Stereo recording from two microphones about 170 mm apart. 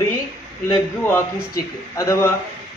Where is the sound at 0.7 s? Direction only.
15° left (ahead or behind).